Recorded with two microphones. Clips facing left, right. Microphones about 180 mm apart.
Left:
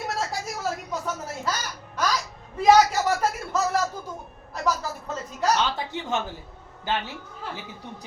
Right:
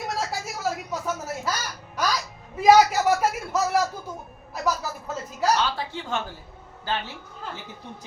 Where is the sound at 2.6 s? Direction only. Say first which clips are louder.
Right 1 dB; 10° right (ahead or behind).